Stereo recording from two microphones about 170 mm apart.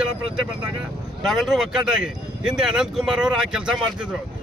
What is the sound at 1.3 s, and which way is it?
Speech, centre (ahead or behind).